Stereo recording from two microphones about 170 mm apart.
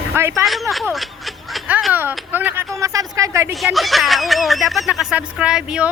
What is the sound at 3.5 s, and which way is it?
Speech, centre (ahead or behind).